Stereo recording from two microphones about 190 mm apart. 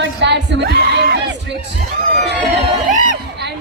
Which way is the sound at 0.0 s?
70° right (ahead or behind).